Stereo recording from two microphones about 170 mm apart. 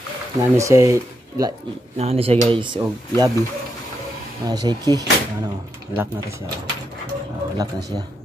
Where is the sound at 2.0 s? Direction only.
35° right (ahead or behind).